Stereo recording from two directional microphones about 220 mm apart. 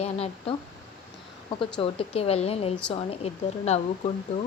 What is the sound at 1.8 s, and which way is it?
A woman's voice, 25° left (ahead or behind).